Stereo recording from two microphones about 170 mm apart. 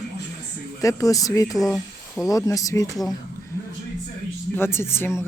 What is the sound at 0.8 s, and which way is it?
Speech, 20° left (ahead or behind).